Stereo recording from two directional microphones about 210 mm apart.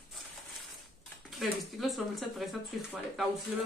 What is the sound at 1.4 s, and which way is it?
Speech, centre (ahead or behind).